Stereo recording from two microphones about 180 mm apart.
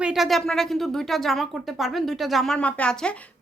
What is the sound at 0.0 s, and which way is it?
Speech, centre (ahead or behind).